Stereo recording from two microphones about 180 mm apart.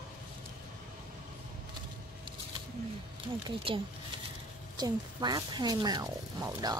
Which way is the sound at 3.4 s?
30° right (ahead or behind).